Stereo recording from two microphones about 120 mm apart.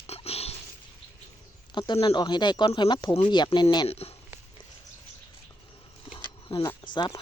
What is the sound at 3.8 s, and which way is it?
Speech, 55° left (ahead or behind).